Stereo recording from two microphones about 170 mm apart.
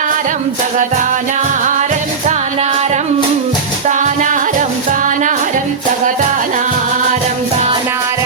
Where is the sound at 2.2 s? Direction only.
45° right (ahead or behind).